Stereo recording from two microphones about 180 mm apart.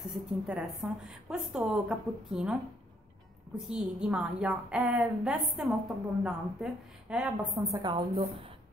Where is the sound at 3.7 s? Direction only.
5° right (ahead or behind).